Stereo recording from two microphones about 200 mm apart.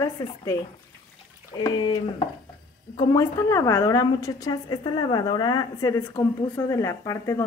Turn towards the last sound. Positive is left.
turn(degrees=15)  # may be behind; listen again after turning